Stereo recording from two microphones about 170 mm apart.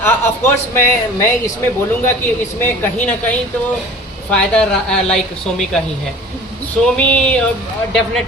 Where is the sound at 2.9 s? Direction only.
10° left (ahead or behind).